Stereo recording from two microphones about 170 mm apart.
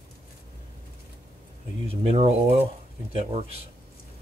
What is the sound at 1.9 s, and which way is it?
Speech, 35° right (ahead or behind).